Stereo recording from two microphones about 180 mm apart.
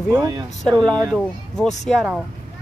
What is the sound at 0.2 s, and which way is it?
Speech, 25° right (ahead or behind).